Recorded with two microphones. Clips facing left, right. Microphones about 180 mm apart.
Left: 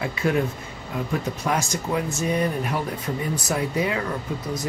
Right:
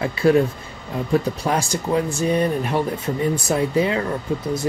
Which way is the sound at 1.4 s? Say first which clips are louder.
Right 3 dB; 30° right (ahead or behind).